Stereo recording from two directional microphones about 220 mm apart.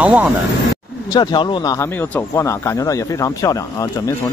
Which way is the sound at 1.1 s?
20° left (ahead or behind).